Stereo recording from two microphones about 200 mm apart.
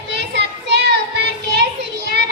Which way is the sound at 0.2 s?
60° right (ahead or behind).